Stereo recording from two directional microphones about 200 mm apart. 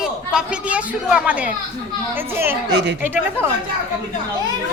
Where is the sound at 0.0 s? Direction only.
5° right (ahead or behind).